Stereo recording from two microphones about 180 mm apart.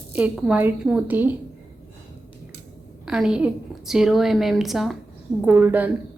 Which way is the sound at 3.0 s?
5° right (ahead or behind).